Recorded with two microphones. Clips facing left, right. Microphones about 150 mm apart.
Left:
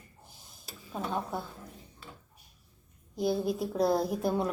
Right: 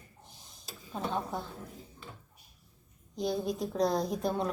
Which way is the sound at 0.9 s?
5° left (ahead or behind).